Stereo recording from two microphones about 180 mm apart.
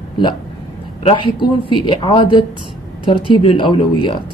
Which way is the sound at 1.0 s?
25° left (ahead or behind).